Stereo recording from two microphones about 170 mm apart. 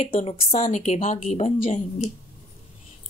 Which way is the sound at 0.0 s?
35° left (ahead or behind).